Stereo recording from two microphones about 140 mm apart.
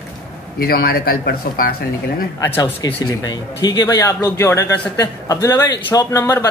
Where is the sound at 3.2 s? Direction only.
30° left (ahead or behind).